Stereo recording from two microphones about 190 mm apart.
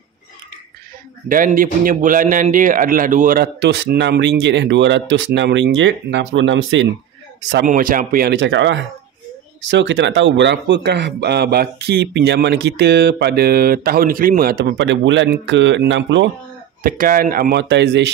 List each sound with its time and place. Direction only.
1.3 s a man's voice: 45° right (ahead or behind)
3.5 s speech: 65° right (ahead or behind)
7.6 s a man's voice: 45° right (ahead or behind)
8.4 s a man's voice: 70° right (ahead or behind)
16.8 s a man's voice: 45° right (ahead or behind); by 18.1 s 65° right (ahead or behind)